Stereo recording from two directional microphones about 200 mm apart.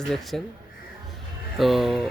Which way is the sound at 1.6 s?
Centre (ahead or behind).